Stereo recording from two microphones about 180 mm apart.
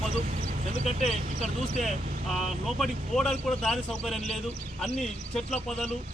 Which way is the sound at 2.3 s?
Centre (ahead or behind).